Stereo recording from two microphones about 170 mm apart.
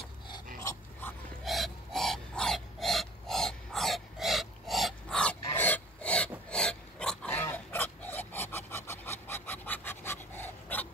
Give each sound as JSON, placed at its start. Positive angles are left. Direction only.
{"t": 0.6, "sound": "dog", "side_deg": 20}
{"t": 1.4, "sound": "dog", "side_deg": 0}
{"t": 5.4, "sound": "filing", "side_deg": 15}
{"t": 6.5, "sound": "pig", "side_deg": 5}